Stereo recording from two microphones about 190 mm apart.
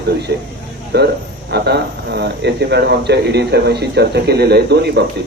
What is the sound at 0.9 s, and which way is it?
Speech, 60° right (ahead or behind).